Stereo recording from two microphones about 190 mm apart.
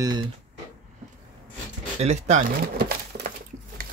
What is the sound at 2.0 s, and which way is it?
Speech, 35° right (ahead or behind).